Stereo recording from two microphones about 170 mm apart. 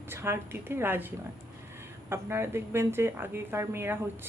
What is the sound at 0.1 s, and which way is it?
A woman's voice, 15° right (ahead or behind).